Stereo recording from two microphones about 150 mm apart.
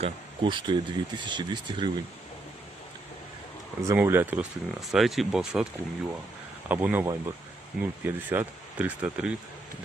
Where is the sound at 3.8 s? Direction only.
15° right (ahead or behind).